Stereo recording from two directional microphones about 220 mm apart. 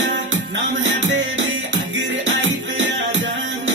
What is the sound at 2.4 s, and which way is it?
Music, 60° right (ahead or behind).